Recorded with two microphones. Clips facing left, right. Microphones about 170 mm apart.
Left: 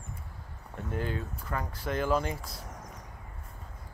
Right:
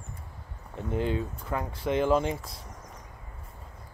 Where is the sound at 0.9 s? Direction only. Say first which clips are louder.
Right 5 dB; 25° right (ahead or behind).